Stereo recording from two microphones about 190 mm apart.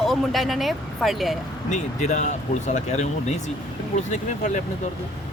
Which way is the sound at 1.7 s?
40° left (ahead or behind).